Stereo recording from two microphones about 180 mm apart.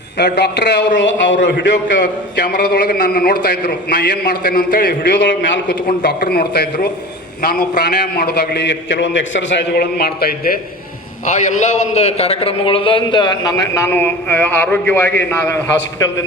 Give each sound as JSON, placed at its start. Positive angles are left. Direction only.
{"t": 0.2, "sound": "a man's voice", "side_deg": 70}
{"t": 0.9, "sound": "a man's voice", "side_deg": 90}
{"t": 2.5, "sound": "a man's voice", "side_deg": 50}
{"t": 4.3, "sound": "a man's voice", "side_deg": 50}
{"t": 5.2, "sound": "a man's voice", "side_deg": 90}
{"t": 11.3, "sound": "a man's voice", "side_deg": 40}